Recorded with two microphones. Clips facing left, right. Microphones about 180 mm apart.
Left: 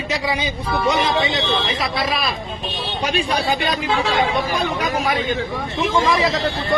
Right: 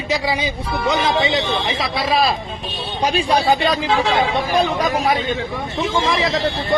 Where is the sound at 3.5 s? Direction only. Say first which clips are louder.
Right 3 dB; 30° right (ahead or behind).